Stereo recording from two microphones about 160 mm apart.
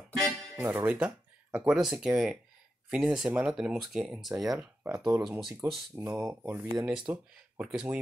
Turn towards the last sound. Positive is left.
turn(degrees=-5)  # may be behind; listen again after turning